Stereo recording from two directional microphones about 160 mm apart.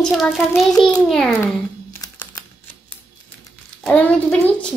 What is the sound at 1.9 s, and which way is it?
Computer keyboard, 20° left (ahead or behind).